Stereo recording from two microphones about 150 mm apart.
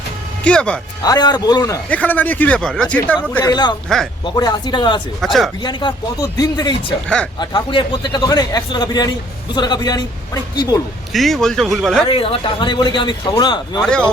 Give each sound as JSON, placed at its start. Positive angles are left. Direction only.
{"t": 0.4, "sound": "speech", "side_deg": 5}
{"t": 1.0, "sound": "a man's voice", "side_deg": 25}
{"t": 1.9, "sound": "speech", "side_deg": 10}
{"t": 3.4, "sound": "a man's voice", "side_deg": 30}
{"t": 3.8, "sound": "speech", "side_deg": 5}
{"t": 4.4, "sound": "a man's voice", "side_deg": 30}
{"t": 5.2, "sound": "speech", "side_deg": 0}
{"t": 5.6, "sound": "a man's voice", "side_deg": 25}
{"t": 11.1, "sound": "speech", "side_deg": 0}
{"t": 12.0, "sound": "a man's voice", "side_deg": 40}
{"t": 13.8, "sound": "speech", "side_deg": 5}